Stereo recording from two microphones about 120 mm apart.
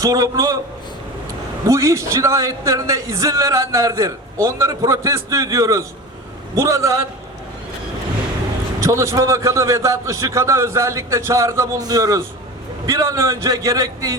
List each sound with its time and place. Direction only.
0.0 s a man's voice: 30° right (ahead or behind)
1.6 s a man's voice: 25° right (ahead or behind)
8.8 s a man's voice: 25° right (ahead or behind)